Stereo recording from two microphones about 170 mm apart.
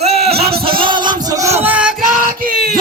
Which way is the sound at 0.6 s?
30° right (ahead or behind).